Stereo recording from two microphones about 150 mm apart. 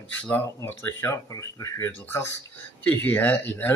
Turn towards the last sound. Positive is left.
turn(degrees=15)  # may be behind; listen again after turning